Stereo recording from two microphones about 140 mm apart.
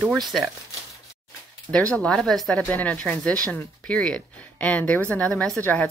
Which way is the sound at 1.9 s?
5° left (ahead or behind).